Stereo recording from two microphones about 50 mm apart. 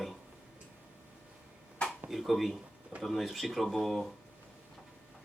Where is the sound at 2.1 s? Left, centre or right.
Centre.